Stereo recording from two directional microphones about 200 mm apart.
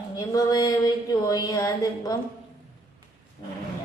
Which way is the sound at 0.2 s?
20° left (ahead or behind).